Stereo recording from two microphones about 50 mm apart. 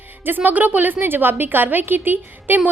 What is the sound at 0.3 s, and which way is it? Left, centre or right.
A woman's voice, right.